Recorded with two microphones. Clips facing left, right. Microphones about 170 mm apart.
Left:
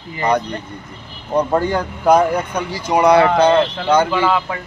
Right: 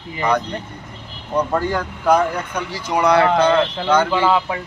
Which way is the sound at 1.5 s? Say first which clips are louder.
Left 3 dB; 20° left (ahead or behind).